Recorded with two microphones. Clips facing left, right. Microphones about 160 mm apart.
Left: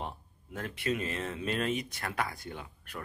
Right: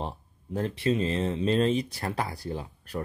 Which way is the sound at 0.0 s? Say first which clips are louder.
Right 5 dB; 30° right (ahead or behind).